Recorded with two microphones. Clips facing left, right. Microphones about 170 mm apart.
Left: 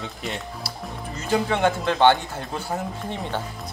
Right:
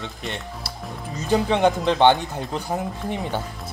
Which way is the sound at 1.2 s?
15° right (ahead or behind).